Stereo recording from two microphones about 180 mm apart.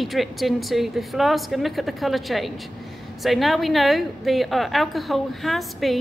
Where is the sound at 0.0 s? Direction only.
Centre (ahead or behind).